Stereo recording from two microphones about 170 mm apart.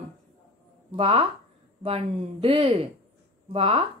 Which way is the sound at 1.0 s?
35° right (ahead or behind).